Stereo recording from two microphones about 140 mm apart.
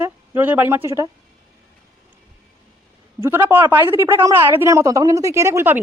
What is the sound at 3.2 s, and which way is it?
Speech, 15° right (ahead or behind).